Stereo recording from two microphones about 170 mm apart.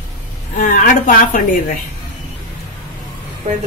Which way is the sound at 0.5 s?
50° left (ahead or behind).